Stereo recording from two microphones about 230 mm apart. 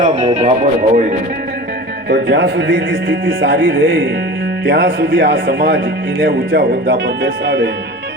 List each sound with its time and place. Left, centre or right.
0.3 s speech: right
2.0 s speech: right